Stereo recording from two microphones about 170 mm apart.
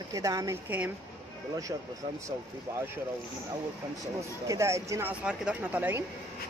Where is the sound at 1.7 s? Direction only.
20° right (ahead or behind).